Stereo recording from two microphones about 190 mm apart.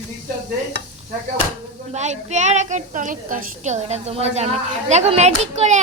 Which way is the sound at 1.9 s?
40° right (ahead or behind).